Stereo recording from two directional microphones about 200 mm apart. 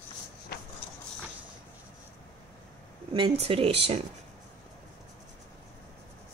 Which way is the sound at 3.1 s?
30° right (ahead or behind).